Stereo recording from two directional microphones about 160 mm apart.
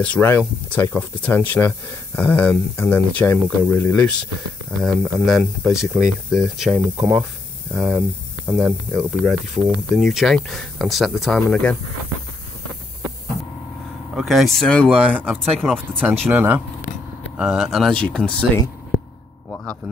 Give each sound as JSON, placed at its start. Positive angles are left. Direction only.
{"t": 0.0, "sound": "speech", "side_deg": 10}
{"t": 9.2, "sound": "speech", "side_deg": 5}
{"t": 14.1, "sound": "speech", "side_deg": 0}
{"t": 16.3, "sound": "speech", "side_deg": -10}
{"t": 19.5, "sound": "speech", "side_deg": 10}